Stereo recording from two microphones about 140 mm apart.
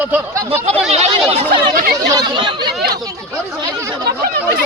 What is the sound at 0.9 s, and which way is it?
Speech, 50° right (ahead or behind).